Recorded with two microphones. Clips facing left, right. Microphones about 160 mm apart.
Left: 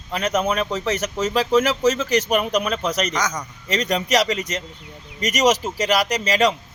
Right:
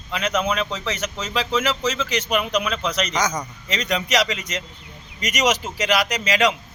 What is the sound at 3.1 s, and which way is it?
Speech, centre (ahead or behind).